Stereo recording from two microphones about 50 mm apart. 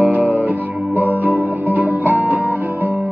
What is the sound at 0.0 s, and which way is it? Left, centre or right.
Music, right.